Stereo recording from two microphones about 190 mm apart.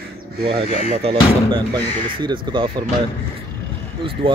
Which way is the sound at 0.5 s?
30° right (ahead or behind).